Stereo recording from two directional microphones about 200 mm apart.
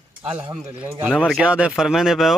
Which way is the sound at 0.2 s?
5° right (ahead or behind).